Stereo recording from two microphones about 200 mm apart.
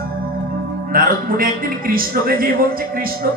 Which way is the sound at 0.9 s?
45° right (ahead or behind).